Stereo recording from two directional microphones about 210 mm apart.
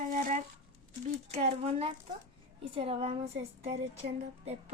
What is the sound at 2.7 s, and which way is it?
A woman's voice, 25° right (ahead or behind).